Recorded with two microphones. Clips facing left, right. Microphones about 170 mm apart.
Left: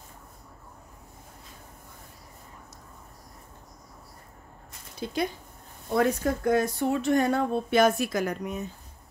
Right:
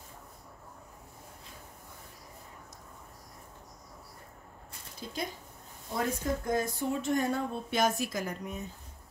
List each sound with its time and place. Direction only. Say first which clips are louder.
5.0 s speech: left 8 dB; 70° left (ahead or behind)